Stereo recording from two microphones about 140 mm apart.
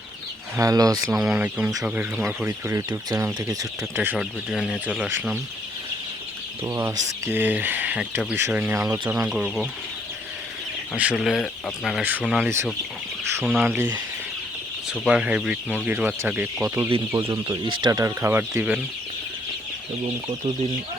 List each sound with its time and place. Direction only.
0.5 s speech: 25° right (ahead or behind)
1.1 s speech: 5° right (ahead or behind)
6.7 s speech: 20° right (ahead or behind)
10.9 s speech: 5° right (ahead or behind)
15.0 s speech: 10° right (ahead or behind); by 18.0 s 35° right (ahead or behind)
18.0 s speech: 20° right (ahead or behind)